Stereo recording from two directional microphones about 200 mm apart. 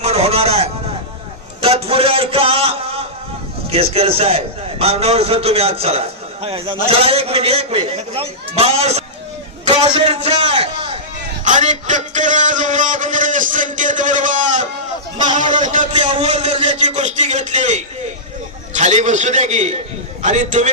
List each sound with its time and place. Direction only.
0.0 s a sound: 30° right (ahead or behind)
3.7 s a man's voice: 30° right (ahead or behind)
11.4 s a man's voice: 40° right (ahead or behind)